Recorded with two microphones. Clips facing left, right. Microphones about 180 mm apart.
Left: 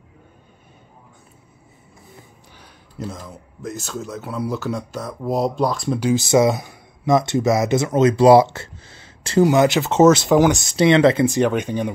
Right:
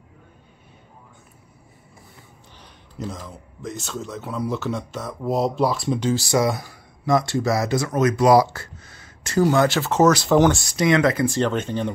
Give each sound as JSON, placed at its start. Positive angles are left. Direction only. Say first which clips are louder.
{"t": 2.6, "sound": "speech", "louder": "left 1 dB", "side_deg": 0}
{"t": 5.9, "sound": "speech", "louder": "left 3 dB", "side_deg": 10}
{"t": 6.2, "sound": "speech", "louder": "left 5 dB", "side_deg": 20}
{"t": 9.4, "sound": "speech", "louder": "left 3 dB", "side_deg": 15}
{"t": 10.3, "sound": "speech", "louder": "left 1 dB", "side_deg": 10}
{"t": 10.6, "sound": "speech", "louder": "left 4 dB", "side_deg": 25}
{"t": 11.3, "sound": "speech", "louder": "left 3 dB", "side_deg": 15}